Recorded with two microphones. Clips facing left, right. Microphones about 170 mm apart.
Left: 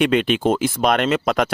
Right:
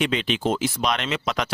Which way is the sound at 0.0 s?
55° left (ahead or behind).